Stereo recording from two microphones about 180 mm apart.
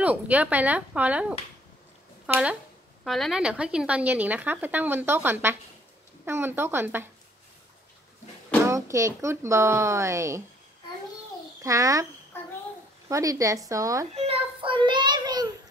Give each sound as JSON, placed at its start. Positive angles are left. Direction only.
{"t": 0.0, "sound": "speech", "side_deg": -10}
{"t": 2.2, "sound": "speech", "side_deg": -5}
{"t": 8.6, "sound": "speech", "side_deg": -15}
{"t": 11.6, "sound": "speech", "side_deg": -20}
{"t": 13.1, "sound": "speech", "side_deg": -20}
{"t": 14.1, "sound": "child singing", "side_deg": -35}